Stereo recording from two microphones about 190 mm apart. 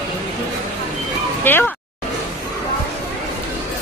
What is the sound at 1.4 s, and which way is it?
Speech, 10° left (ahead or behind).